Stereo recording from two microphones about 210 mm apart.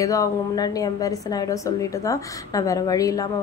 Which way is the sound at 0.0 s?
15° left (ahead or behind).